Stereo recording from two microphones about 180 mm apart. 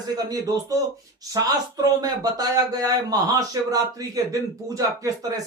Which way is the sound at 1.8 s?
20° right (ahead or behind).